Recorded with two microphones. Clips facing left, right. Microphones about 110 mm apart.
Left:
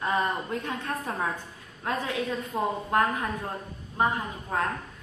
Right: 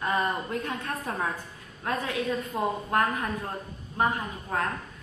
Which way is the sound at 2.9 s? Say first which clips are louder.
Left 2 dB; 15° left (ahead or behind).